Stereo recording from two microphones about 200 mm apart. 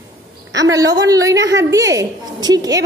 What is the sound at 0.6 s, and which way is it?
A woman's voice, 15° right (ahead or behind).